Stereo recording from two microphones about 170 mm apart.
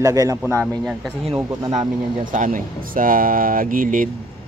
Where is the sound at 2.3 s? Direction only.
50° right (ahead or behind).